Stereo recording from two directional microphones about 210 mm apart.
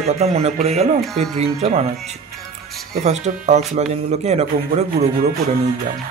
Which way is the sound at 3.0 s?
35° right (ahead or behind).